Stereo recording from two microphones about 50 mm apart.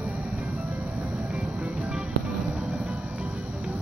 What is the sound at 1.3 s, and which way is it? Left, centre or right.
Music, right.